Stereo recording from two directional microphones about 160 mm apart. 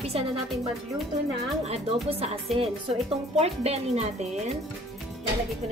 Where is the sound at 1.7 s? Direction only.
40° right (ahead or behind).